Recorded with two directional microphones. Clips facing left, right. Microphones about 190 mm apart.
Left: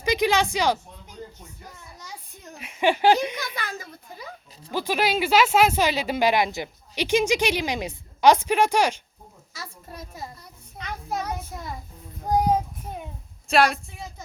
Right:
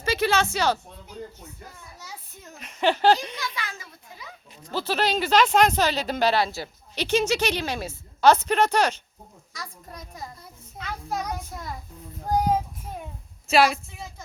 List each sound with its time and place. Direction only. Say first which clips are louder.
0.0 s speech: left 1 dB; 15° left (ahead or behind)
2.6 s speech: left 1 dB; 10° left (ahead or behind)
3.3 s a child's voice: left 2 dB; 55° left (ahead or behind)
4.7 s a child's voice: left 1 dB; 10° left (ahead or behind)